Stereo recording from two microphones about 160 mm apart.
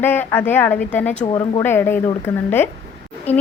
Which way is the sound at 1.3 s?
30° left (ahead or behind).